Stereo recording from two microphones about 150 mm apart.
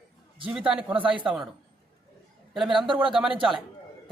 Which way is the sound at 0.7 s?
5° right (ahead or behind).